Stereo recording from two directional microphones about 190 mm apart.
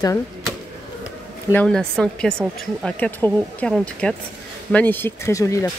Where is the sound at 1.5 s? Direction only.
5° left (ahead or behind).